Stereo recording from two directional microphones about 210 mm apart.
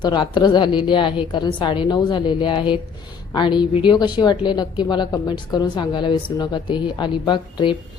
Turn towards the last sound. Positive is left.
turn(degrees=20)  # may be behind; listen again after turning